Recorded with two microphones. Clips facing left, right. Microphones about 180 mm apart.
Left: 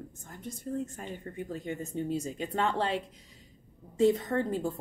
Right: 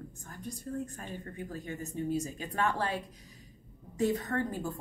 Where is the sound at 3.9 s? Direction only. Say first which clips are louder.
Left 5 dB; 25° left (ahead or behind).